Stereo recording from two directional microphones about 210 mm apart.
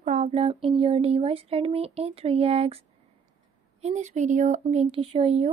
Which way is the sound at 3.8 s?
30° right (ahead or behind).